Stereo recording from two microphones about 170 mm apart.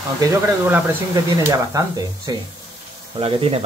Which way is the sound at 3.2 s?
35° right (ahead or behind).